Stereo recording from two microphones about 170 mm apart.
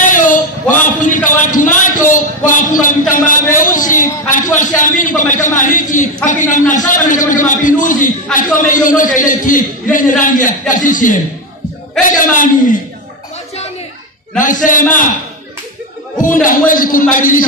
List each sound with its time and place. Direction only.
0.0 s a sound: 50° left (ahead or behind)
6.2 s a man's voice: 45° left (ahead or behind)
14.4 s a man's voice: 50° left (ahead or behind)
16.2 s a man's voice: 50° left (ahead or behind)